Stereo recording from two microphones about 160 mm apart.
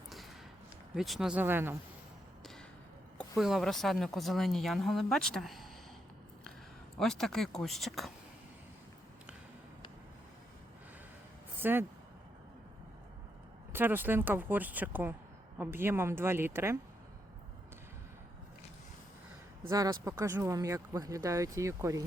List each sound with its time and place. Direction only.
0.9 s speech: centre (ahead or behind)
3.2 s a woman's voice: centre (ahead or behind)
7.0 s a woman's voice: centre (ahead or behind)
11.6 s speech: 15° right (ahead or behind)
13.7 s speech: 10° right (ahead or behind)
19.6 s speech: 20° right (ahead or behind)